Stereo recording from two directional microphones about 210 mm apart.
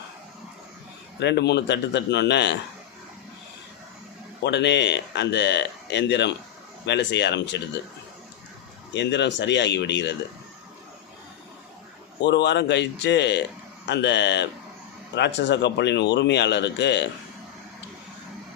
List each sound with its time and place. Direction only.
1.2 s speech: 55° left (ahead or behind)
4.4 s speech: 55° left (ahead or behind)
8.9 s speech: 55° left (ahead or behind)
12.2 s speech: 55° left (ahead or behind)